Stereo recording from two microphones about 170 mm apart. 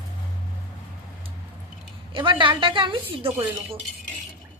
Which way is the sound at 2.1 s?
30° right (ahead or behind).